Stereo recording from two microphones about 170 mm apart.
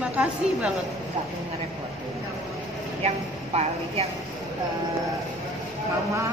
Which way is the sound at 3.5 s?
35° right (ahead or behind).